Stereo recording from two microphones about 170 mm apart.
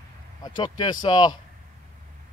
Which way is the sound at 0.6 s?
25° left (ahead or behind).